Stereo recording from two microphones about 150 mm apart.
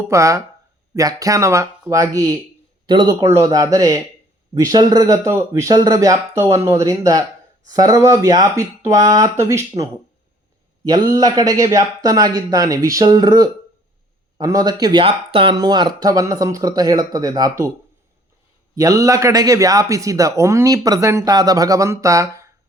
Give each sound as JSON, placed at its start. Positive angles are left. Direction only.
{"t": 0.1, "sound": "speech", "side_deg": -20}
{"t": 15.0, "sound": "speech", "side_deg": -35}
{"t": 18.7, "sound": "speech", "side_deg": -25}